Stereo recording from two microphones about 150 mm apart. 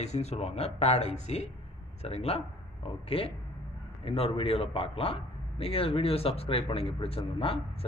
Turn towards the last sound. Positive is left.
turn(degrees=40)  # may be behind; listen again after turning